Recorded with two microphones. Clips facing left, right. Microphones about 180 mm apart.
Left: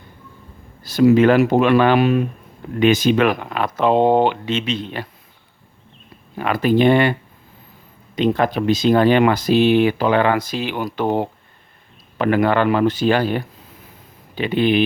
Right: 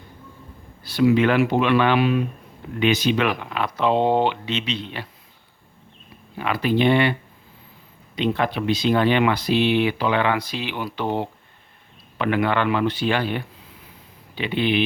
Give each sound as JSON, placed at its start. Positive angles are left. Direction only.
{"t": 0.8, "sound": "speech", "side_deg": 40}
{"t": 6.3, "sound": "a man's voice", "side_deg": 45}